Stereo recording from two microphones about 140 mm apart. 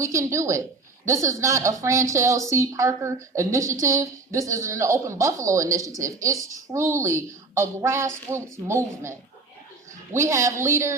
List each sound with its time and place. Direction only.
0.0 s a woman's voice: 20° right (ahead or behind)